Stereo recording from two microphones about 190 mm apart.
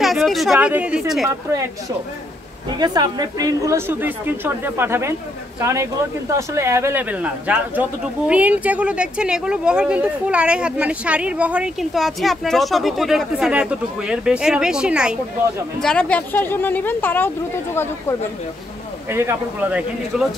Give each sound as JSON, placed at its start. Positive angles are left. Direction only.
{"t": 0.0, "sound": "speech", "side_deg": 0}
{"t": 2.8, "sound": "a woman's voice", "side_deg": -20}
{"t": 19.0, "sound": "a woman's voice", "side_deg": -10}